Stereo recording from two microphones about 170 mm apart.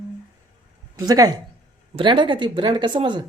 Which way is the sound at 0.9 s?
20° right (ahead or behind).